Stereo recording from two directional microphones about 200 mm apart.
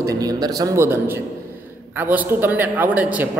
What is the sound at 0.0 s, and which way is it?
A man's voice, 15° right (ahead or behind).